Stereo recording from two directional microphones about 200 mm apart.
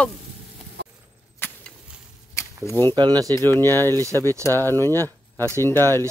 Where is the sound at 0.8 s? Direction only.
60° right (ahead or behind).